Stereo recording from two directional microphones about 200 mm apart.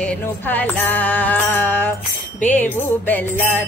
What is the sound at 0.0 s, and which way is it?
Music, 10° left (ahead or behind).